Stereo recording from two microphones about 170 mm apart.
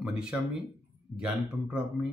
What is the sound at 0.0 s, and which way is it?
Speech, 5° right (ahead or behind).